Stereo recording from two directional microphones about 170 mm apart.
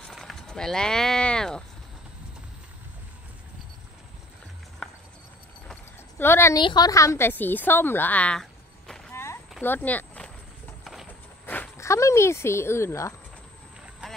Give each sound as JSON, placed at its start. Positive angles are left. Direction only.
{"t": 0.1, "sound": "a sound", "side_deg": 0}
{"t": 4.8, "sound": "music", "side_deg": 5}
{"t": 6.1, "sound": "a woman's voice", "side_deg": 15}
{"t": 9.1, "sound": "clip-clop", "side_deg": 15}
{"t": 9.6, "sound": "a sound", "side_deg": 10}
{"t": 11.4, "sound": "speech", "side_deg": 10}